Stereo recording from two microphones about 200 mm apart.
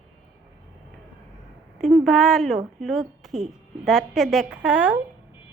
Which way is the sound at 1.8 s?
Centre (ahead or behind).